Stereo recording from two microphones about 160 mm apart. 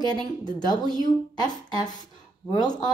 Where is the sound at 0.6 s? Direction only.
25° left (ahead or behind).